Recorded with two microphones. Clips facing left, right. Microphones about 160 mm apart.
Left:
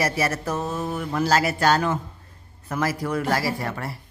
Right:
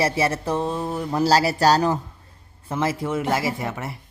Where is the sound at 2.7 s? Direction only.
25° right (ahead or behind).